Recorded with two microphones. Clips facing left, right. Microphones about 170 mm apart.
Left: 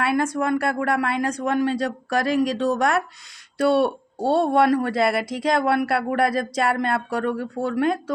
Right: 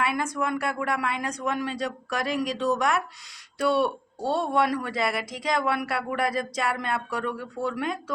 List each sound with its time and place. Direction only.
0.3 s speech: 35° left (ahead or behind)
1.5 s speech: 55° left (ahead or behind)
1.7 s speech: 30° left (ahead or behind)
4.6 s speech: 60° left (ahead or behind)
4.9 s speech: 35° left (ahead or behind)
5.8 s speech: 55° left (ahead or behind)
6.1 s speech: 35° left (ahead or behind)